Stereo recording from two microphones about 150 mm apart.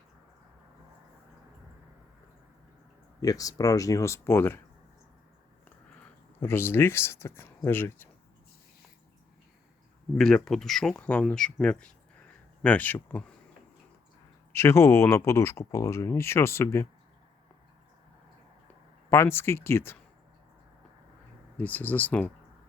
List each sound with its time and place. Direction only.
3.2 s speech: 25° left (ahead or behind)
6.4 s speech: 15° left (ahead or behind)
10.2 s speech: 5° left (ahead or behind)
14.5 s speech: 15° left (ahead or behind)
19.1 s speech: 15° left (ahead or behind)
21.6 s speech: 10° left (ahead or behind)